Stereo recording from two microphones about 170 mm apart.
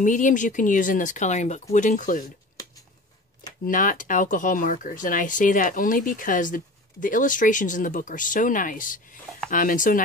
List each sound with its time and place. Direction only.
0.0 s speech: 50° left (ahead or behind)
3.6 s speech: 50° left (ahead or behind)